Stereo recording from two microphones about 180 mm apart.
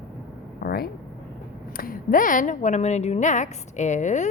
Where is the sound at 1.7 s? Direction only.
55° left (ahead or behind).